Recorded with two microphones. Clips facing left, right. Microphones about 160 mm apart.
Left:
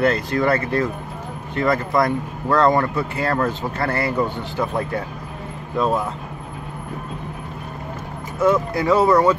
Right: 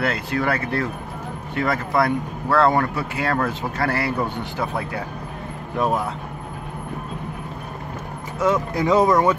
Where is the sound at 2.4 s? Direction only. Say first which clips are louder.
Left 1 dB; 10° right (ahead or behind).